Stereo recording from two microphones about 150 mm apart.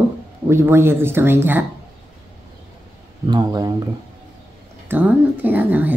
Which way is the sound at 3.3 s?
25° right (ahead or behind).